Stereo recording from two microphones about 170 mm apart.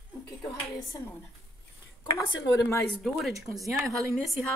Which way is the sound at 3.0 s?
Centre (ahead or behind).